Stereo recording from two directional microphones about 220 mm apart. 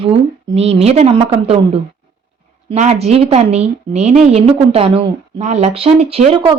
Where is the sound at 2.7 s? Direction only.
30° right (ahead or behind).